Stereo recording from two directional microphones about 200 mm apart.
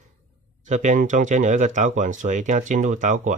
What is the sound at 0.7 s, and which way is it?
Speech, 35° right (ahead or behind).